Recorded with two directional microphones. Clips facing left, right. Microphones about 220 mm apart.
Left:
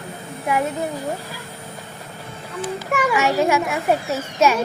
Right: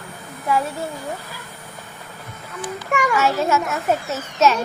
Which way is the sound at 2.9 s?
5° left (ahead or behind).